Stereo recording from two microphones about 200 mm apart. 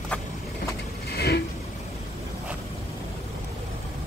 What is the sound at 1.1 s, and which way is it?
Vehicle, 50° left (ahead or behind).